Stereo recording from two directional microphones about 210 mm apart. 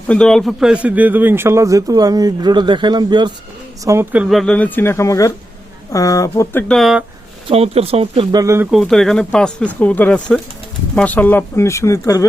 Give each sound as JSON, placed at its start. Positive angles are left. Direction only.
{"t": 0.1, "sound": "a man's voice", "side_deg": 5}
{"t": 3.8, "sound": "speech", "side_deg": -10}
{"t": 7.4, "sound": "speech", "side_deg": -30}
{"t": 8.7, "sound": "speech", "side_deg": 0}